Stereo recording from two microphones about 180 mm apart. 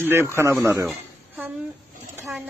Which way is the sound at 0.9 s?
Centre (ahead or behind).